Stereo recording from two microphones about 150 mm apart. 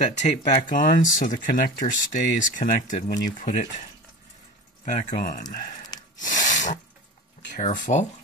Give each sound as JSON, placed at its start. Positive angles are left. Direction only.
{"t": 0.0, "sound": "speech", "side_deg": 50}
{"t": 4.8, "sound": "speech", "side_deg": 60}
{"t": 6.1, "sound": "sneeze", "side_deg": 60}
{"t": 7.5, "sound": "speech", "side_deg": 55}